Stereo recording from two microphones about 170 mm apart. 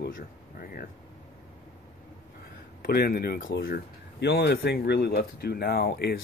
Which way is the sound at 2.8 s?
60° left (ahead or behind).